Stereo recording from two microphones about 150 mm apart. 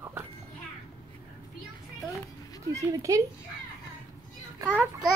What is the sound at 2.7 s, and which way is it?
Speech, 20° right (ahead or behind).